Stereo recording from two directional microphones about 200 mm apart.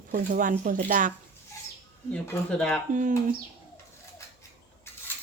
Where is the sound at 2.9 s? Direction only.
40° right (ahead or behind).